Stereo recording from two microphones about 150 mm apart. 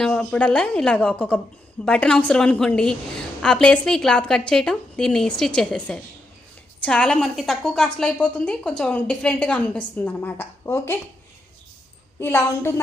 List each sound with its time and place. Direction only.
0.0 s a woman's voice: 5° left (ahead or behind)
12.2 s a woman's voice: 15° left (ahead or behind)